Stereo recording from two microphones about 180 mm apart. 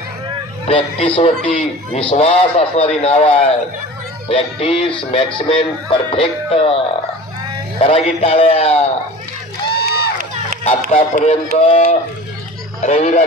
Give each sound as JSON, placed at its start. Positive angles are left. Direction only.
{"t": 0.7, "sound": "a man's voice", "side_deg": 30}
{"t": 7.8, "sound": "a man's voice", "side_deg": 35}
{"t": 9.7, "sound": "a sound", "side_deg": 60}
{"t": 11.0, "sound": "a man's voice", "side_deg": 40}
{"t": 12.8, "sound": "a man's voice", "side_deg": 35}